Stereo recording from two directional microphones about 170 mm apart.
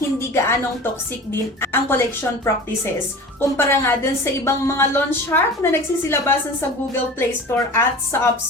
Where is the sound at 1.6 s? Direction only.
15° left (ahead or behind).